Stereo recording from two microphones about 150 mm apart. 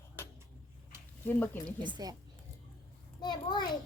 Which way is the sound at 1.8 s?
30° right (ahead or behind).